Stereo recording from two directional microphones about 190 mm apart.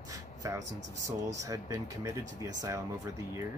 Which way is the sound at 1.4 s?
15° right (ahead or behind).